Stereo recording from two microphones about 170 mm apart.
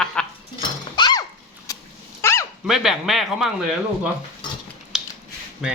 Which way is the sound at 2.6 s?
Centre (ahead or behind).